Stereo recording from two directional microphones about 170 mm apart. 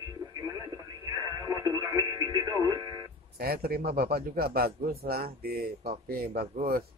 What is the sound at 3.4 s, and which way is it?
A man's voice, 65° right (ahead or behind).